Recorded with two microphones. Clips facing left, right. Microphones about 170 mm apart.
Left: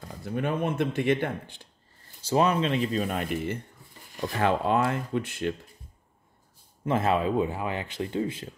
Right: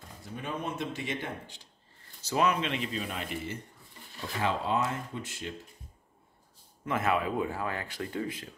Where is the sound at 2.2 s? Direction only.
30° left (ahead or behind); by 5.5 s 60° left (ahead or behind).